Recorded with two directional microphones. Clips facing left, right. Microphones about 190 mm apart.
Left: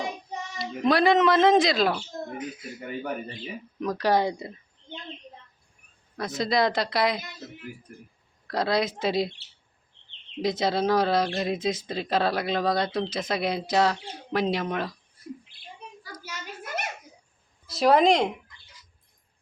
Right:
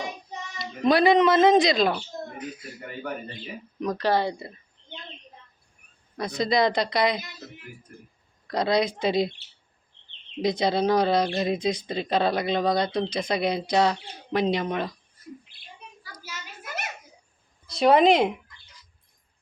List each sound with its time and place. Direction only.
0.6 s speech: centre (ahead or behind)
3.8 s speech: 5° left (ahead or behind)
6.1 s speech: centre (ahead or behind)
8.4 s speech: centre (ahead or behind)
10.4 s speech: centre (ahead or behind)
17.7 s speech: centre (ahead or behind)